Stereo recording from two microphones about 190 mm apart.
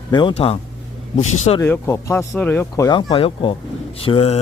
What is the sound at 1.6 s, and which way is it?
Speech, 10° left (ahead or behind).